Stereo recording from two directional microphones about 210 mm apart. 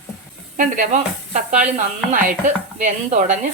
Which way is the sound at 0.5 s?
40° right (ahead or behind).